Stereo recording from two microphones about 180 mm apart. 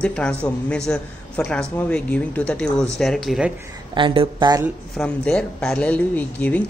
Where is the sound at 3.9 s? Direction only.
30° right (ahead or behind).